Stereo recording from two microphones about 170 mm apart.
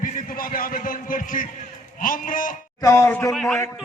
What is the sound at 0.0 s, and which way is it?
A man's voice, 55° left (ahead or behind).